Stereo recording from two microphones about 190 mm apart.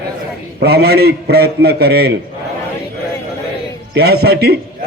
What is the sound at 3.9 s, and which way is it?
Speech, 60° right (ahead or behind).